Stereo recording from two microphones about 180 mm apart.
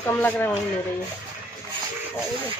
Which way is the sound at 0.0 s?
10° left (ahead or behind).